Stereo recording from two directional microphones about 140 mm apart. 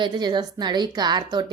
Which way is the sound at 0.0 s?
30° right (ahead or behind).